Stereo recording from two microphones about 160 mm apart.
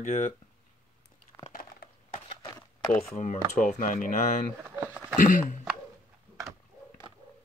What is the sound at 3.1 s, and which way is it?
Speech, 50° left (ahead or behind).